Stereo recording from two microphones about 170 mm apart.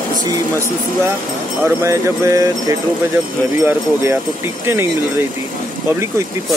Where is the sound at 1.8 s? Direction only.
20° right (ahead or behind).